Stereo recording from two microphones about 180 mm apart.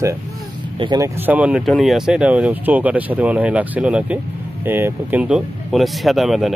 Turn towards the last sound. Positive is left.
turn(degrees=0)  # may be behind; listen again after turning